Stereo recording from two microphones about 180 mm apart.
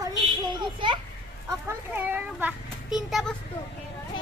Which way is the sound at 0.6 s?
25° right (ahead or behind).